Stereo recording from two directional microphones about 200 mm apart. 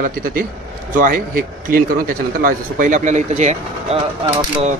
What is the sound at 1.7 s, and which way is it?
Speech, 45° right (ahead or behind).